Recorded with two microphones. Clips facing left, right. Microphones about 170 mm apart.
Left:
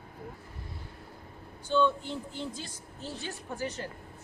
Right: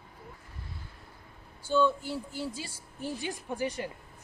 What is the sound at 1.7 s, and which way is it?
Speech, 10° right (ahead or behind).